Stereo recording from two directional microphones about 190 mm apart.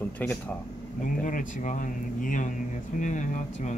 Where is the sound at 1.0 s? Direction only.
45° left (ahead or behind).